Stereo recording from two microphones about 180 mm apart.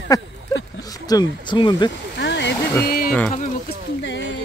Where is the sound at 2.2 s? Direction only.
75° left (ahead or behind); by 3.1 s 55° left (ahead or behind).